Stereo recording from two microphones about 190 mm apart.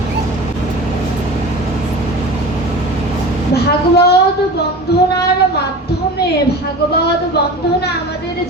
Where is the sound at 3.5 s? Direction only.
60° left (ahead or behind).